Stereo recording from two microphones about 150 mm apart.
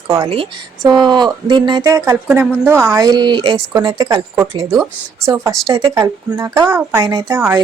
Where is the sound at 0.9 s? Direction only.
30° right (ahead or behind).